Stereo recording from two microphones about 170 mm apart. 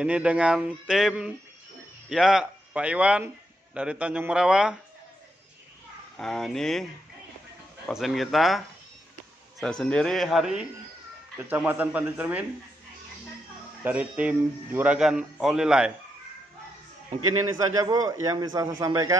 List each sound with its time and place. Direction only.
0.0 s a man's voice: 5° right (ahead or behind)
6.1 s a man's voice: centre (ahead or behind)
7.9 s a man's voice: centre (ahead or behind)
13.8 s a man's voice: 10° right (ahead or behind)
17.6 s a man's voice: 20° right (ahead or behind)